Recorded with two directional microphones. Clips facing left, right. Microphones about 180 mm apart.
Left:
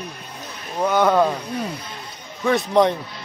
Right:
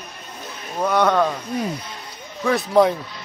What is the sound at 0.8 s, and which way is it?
Speech, centre (ahead or behind).